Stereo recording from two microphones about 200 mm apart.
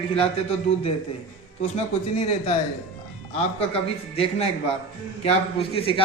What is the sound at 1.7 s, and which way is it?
Speech, 30° left (ahead or behind).